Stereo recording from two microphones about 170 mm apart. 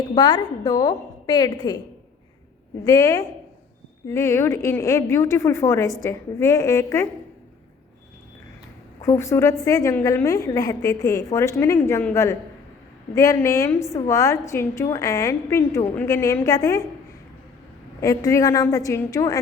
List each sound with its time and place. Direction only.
0.2 s a woman's voice: 25° left (ahead or behind)
2.8 s a woman's voice: 20° left (ahead or behind)
9.0 s a woman's voice: 15° left (ahead or behind)
18.0 s a woman's voice: 20° left (ahead or behind)